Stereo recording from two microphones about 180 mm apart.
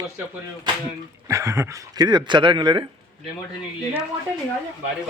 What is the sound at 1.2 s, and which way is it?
Speech, 15° right (ahead or behind).